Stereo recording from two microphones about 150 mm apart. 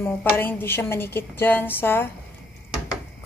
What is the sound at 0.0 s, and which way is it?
A woman's voice, 15° left (ahead or behind).